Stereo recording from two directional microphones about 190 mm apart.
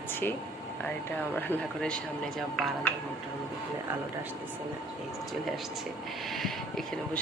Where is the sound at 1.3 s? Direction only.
5° left (ahead or behind).